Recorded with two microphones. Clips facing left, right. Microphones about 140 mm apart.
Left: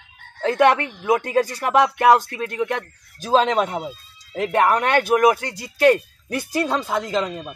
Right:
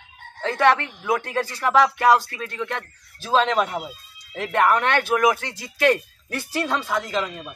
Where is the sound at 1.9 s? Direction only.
50° left (ahead or behind).